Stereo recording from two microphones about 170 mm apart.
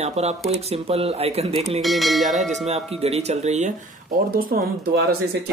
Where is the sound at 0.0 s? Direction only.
40° right (ahead or behind).